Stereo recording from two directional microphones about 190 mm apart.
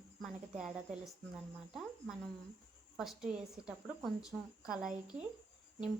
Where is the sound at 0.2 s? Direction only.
Centre (ahead or behind).